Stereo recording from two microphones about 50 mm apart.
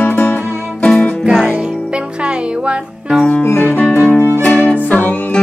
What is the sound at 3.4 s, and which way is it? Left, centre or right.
Music, left.